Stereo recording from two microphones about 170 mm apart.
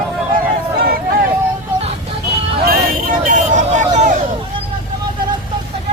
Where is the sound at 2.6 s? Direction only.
55° right (ahead or behind).